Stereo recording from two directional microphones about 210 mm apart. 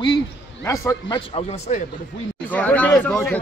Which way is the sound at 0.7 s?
20° left (ahead or behind).